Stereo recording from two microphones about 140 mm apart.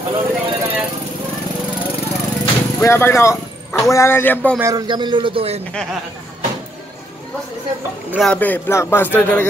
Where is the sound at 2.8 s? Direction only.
20° left (ahead or behind).